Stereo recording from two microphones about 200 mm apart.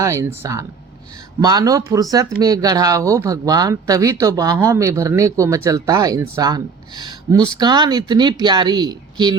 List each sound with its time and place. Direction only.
0.0 s speech: 15° right (ahead or behind)